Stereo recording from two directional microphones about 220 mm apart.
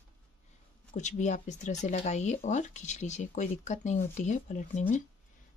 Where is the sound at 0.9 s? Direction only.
35° left (ahead or behind).